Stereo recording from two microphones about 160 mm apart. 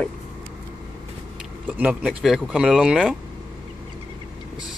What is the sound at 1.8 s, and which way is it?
Speech, 10° right (ahead or behind).